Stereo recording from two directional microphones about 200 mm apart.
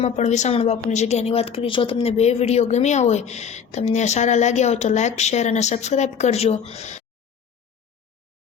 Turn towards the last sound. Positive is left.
turn(degrees=35)  # may be behind; listen again after turning